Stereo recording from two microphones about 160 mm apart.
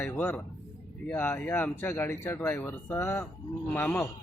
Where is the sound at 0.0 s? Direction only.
15° left (ahead or behind).